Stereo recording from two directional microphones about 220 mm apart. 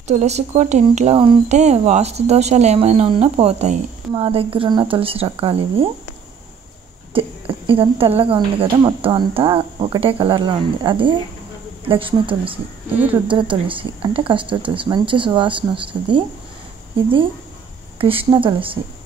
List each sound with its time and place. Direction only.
0.1 s speech: 30° right (ahead or behind)
7.2 s speech: 25° right (ahead or behind)
17.9 s speech: 25° right (ahead or behind)